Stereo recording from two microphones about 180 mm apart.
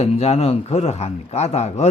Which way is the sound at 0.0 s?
35° left (ahead or behind).